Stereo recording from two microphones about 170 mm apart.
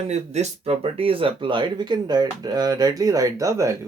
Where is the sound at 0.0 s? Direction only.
40° right (ahead or behind).